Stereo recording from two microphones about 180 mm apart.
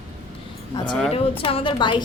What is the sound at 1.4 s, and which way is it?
Speech, 30° left (ahead or behind).